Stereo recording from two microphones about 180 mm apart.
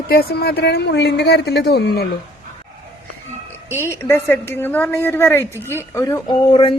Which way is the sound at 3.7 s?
15° left (ahead or behind).